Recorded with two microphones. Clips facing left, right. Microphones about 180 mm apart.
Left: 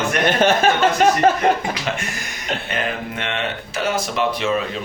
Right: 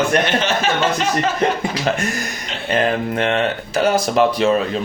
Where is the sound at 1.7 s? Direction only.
40° right (ahead or behind).